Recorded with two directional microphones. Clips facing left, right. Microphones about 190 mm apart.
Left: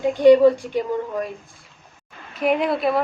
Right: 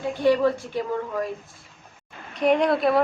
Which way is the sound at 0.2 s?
15° left (ahead or behind).